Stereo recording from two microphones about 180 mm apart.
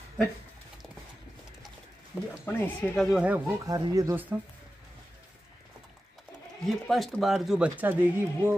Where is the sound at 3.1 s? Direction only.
5° right (ahead or behind).